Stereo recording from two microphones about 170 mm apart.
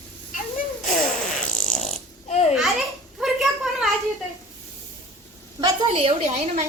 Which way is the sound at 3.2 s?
Centre (ahead or behind).